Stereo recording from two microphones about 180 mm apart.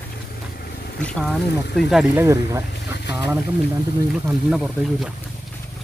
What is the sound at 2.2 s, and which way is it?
Speech, 15° right (ahead or behind).